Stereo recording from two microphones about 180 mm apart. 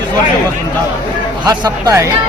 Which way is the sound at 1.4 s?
25° right (ahead or behind).